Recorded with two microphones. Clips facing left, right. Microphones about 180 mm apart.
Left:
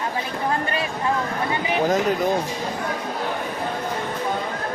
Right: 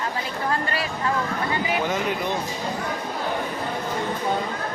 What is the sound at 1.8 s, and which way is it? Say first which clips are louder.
Speech: left 5 dB; 40° left (ahead or behind).